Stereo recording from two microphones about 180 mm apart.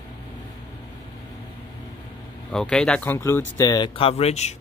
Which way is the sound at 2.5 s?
5° left (ahead or behind).